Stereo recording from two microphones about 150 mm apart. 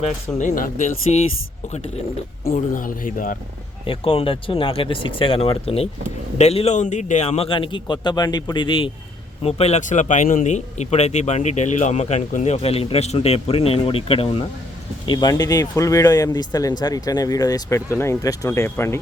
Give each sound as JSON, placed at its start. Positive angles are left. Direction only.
{"t": 0.3, "sound": "speech", "side_deg": 60}
{"t": 2.5, "sound": "speech", "side_deg": 65}
{"t": 3.8, "sound": "a man's voice", "side_deg": 40}